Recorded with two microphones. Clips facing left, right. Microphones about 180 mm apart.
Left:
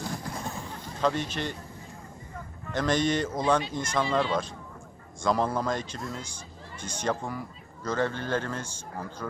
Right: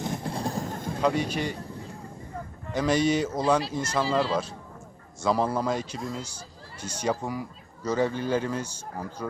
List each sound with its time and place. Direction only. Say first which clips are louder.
0.0 s a sound: right 4 dB; 25° right (ahead or behind); by 0.9 s 45° right (ahead or behind)
1.0 s speech: right 2 dB; 10° right (ahead or behind)
2.7 s speech: right 2 dB; 10° right (ahead or behind)